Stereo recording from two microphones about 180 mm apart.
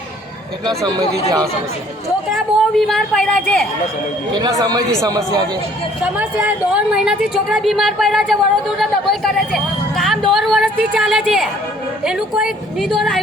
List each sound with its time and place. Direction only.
0.8 s speech: 20° right (ahead or behind)
2.3 s a woman's voice: centre (ahead or behind)
4.4 s speech: 20° right (ahead or behind)
6.0 s a woman's voice: 5° right (ahead or behind)